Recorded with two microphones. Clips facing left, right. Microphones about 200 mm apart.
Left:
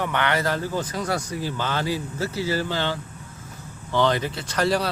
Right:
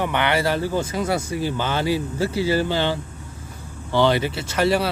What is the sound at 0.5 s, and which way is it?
Speech, 25° right (ahead or behind).